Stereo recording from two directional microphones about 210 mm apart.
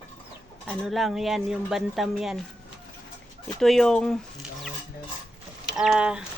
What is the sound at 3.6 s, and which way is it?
Speech, centre (ahead or behind).